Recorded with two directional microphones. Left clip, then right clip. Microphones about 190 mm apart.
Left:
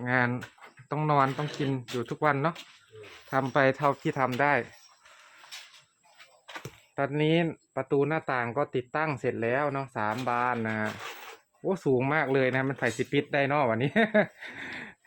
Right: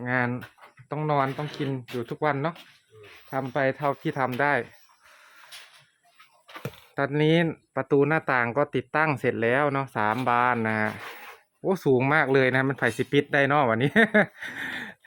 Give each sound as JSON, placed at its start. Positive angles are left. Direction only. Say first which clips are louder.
{"t": 0.0, "sound": "speech", "louder": "even", "side_deg": -15}
{"t": 3.2, "sound": "speech", "louder": "left 1 dB", "side_deg": 10}
{"t": 3.8, "sound": "speech", "louder": "even", "side_deg": -10}
{"t": 6.9, "sound": "speech", "louder": "right 3 dB", "side_deg": -30}